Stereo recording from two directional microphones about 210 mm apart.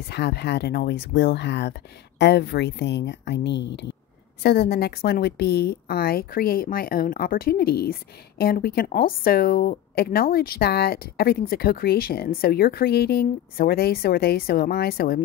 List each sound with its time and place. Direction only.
0.1 s a woman's voice: 50° left (ahead or behind)